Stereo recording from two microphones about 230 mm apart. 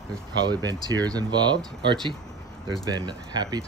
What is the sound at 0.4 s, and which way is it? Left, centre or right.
Speech, centre.